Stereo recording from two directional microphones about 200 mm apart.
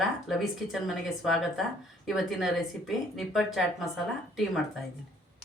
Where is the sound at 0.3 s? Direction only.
Centre (ahead or behind).